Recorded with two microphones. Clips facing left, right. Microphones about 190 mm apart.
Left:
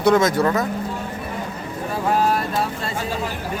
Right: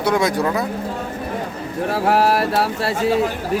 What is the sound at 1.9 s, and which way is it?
Speech, 75° right (ahead or behind).